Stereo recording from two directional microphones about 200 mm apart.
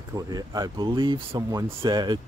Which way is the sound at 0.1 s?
20° right (ahead or behind).